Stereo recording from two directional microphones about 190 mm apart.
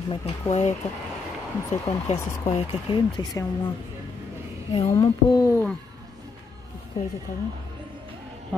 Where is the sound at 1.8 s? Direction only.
35° left (ahead or behind).